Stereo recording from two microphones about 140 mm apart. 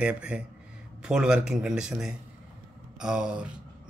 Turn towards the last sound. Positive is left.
turn(degrees=-5)  # may be behind; listen again after turning